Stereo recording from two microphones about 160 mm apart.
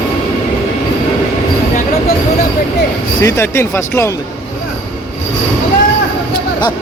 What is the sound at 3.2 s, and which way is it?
Speech, 15° left (ahead or behind).